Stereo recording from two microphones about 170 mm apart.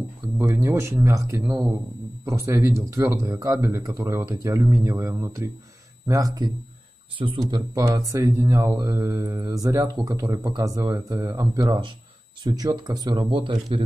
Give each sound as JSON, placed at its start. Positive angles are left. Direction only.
{"t": 0.4, "sound": "speech", "side_deg": -15}